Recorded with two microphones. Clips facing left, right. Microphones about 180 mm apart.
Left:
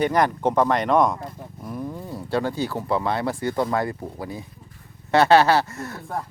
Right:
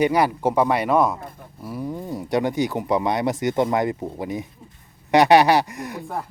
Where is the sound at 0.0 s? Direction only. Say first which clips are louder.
Right 1 dB; 10° right (ahead or behind).